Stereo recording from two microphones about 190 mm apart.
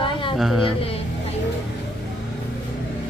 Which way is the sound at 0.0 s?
25° left (ahead or behind).